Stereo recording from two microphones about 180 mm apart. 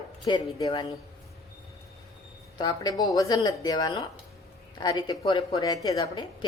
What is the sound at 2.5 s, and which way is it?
A woman's voice, 20° left (ahead or behind).